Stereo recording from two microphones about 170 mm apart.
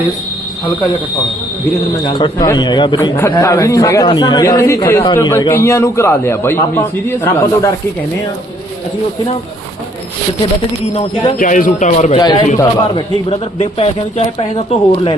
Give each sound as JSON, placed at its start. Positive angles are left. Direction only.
{"t": 2.1, "sound": "a man's voice", "side_deg": 25}
{"t": 3.2, "sound": "a man's voice", "side_deg": 15}
{"t": 10.9, "sound": "speech", "side_deg": 35}
{"t": 11.3, "sound": "a man's voice", "side_deg": 50}
{"t": 12.1, "sound": "a man's voice", "side_deg": 25}